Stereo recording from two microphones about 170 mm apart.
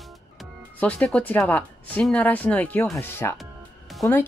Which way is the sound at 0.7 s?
10° left (ahead or behind).